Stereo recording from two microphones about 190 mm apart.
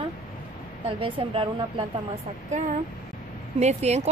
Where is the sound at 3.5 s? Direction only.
35° right (ahead or behind).